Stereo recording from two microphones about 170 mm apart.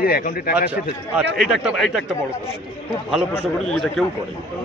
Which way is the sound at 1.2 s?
Centre (ahead or behind).